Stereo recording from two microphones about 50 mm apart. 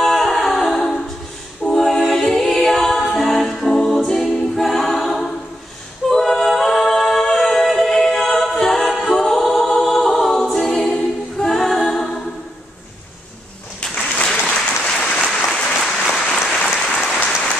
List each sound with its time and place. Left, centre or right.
0.0 s humming: centre
1.7 s a capella: centre
13.9 s applause: left
14.5 s applause: centre
16.8 s applause: centre